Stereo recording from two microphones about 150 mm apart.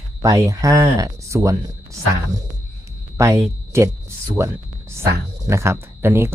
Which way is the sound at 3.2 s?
20° right (ahead or behind).